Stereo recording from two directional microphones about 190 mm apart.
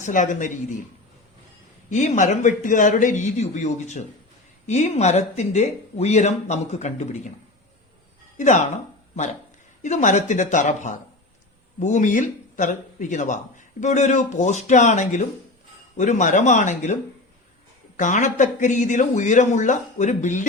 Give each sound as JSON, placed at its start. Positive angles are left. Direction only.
{"t": 0.0, "sound": "speech", "side_deg": 40}
{"t": 1.9, "sound": "speech", "side_deg": 40}
{"t": 8.4, "sound": "speech", "side_deg": 40}